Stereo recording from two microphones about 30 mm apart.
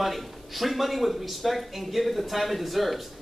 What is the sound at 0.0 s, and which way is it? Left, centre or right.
Speech, centre.